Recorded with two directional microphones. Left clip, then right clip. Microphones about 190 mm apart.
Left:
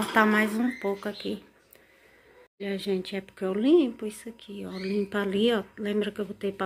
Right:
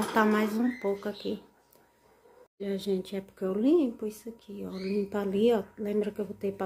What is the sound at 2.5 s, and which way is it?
Speech, 10° right (ahead or behind).